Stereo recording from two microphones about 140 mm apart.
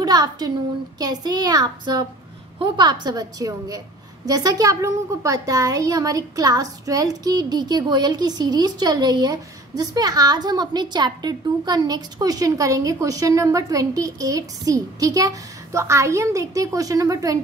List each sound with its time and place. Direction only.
0.0 s a woman's voice: 30° right (ahead or behind)